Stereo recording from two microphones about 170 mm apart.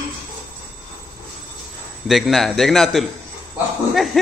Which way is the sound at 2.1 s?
Centre (ahead or behind).